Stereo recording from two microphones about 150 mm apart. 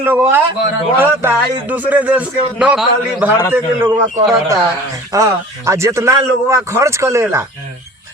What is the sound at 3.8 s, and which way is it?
A man's voice, 20° right (ahead or behind).